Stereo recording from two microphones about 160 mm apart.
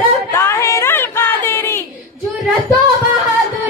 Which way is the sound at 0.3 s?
15° left (ahead or behind).